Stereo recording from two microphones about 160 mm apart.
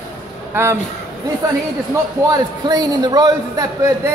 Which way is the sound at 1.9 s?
20° right (ahead or behind).